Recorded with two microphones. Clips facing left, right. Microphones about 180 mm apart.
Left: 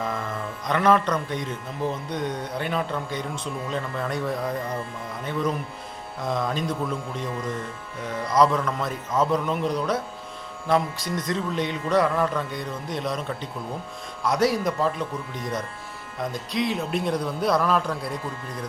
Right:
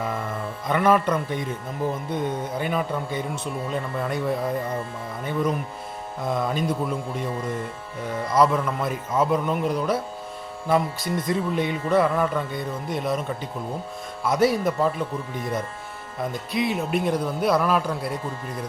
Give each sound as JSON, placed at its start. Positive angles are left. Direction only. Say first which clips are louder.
{"t": 0.7, "sound": "a man's voice", "louder": "right 1 dB", "side_deg": -5}
{"t": 8.3, "sound": "a man's voice", "louder": "even", "side_deg": -5}